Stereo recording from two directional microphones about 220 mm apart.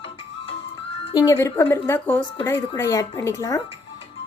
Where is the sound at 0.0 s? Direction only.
25° left (ahead or behind).